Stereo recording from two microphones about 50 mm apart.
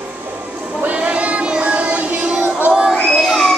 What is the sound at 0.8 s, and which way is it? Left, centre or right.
Child singing, right.